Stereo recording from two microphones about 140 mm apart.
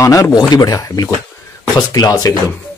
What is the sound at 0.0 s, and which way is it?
A man's voice, 25° left (ahead or behind).